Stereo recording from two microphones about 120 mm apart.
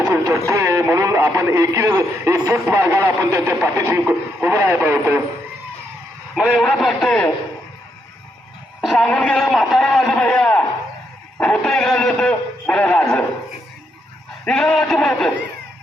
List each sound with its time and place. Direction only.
0.1 s speech: 25° right (ahead or behind)
6.3 s a man's voice: 5° right (ahead or behind)
8.8 s a man's voice: centre (ahead or behind)
14.4 s a man's voice: 5° left (ahead or behind)